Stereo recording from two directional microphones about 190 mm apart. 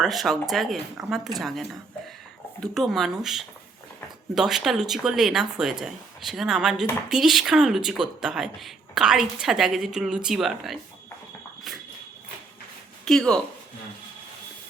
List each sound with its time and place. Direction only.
0.0 s speech: centre (ahead or behind)
13.1 s speech: 5° left (ahead or behind)